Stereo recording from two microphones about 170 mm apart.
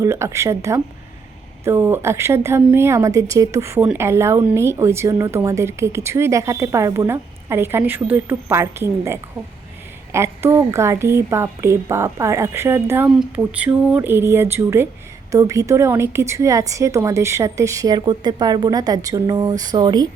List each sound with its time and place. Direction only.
0.0 s a woman's voice: 15° right (ahead or behind)